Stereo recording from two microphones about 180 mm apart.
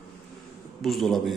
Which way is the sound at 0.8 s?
Centre (ahead or behind).